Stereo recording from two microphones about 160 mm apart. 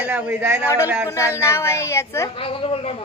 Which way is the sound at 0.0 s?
10° right (ahead or behind).